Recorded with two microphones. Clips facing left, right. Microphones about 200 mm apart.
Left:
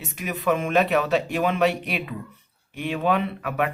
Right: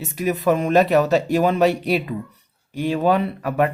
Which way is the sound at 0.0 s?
40° right (ahead or behind).